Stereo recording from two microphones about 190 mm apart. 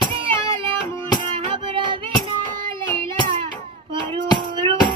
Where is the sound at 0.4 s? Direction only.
25° right (ahead or behind).